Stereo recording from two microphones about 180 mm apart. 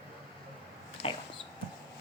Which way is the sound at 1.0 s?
30° left (ahead or behind).